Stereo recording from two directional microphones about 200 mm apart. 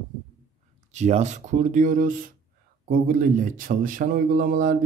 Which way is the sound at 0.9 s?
35° right (ahead or behind).